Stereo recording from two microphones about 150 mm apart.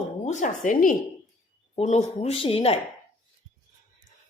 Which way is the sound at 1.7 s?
50° left (ahead or behind).